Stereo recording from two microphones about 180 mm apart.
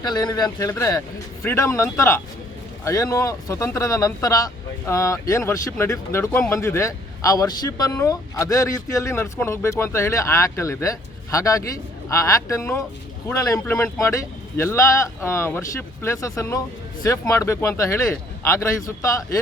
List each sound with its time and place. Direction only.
0.0 s speech: 25° left (ahead or behind)